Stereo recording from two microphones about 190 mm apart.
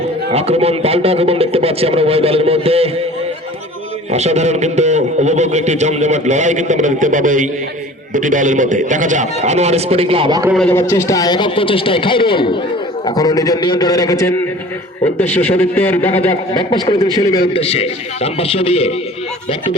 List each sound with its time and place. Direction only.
0.3 s a man's voice: 35° right (ahead or behind)
4.1 s a man's voice: 35° right (ahead or behind)
10.5 s a man's voice: 5° left (ahead or behind)
16.7 s a man's voice: 25° left (ahead or behind)